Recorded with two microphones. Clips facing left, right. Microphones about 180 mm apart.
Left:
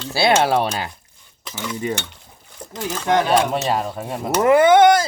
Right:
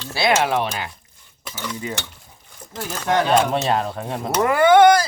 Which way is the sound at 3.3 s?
5° left (ahead or behind).